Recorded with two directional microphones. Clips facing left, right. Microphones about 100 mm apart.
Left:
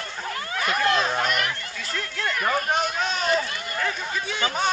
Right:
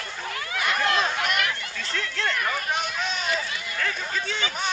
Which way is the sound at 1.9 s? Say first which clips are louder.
Right 1 dB; 10° left (ahead or behind).